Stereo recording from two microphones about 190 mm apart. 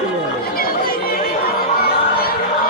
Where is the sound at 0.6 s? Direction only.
50° left (ahead or behind).